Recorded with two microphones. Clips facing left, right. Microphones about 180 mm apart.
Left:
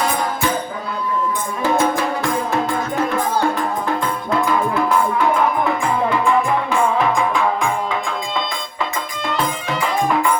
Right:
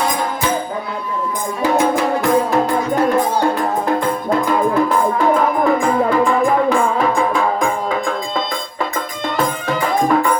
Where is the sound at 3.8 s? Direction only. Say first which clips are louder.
Right 4 dB; 40° right (ahead or behind).